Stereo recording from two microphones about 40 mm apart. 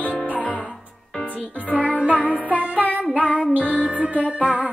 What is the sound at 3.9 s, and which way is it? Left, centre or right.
Music, right.